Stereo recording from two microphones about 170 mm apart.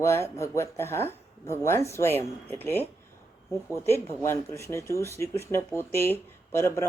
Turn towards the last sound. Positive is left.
turn(degrees=15)  # may be behind; listen again after turning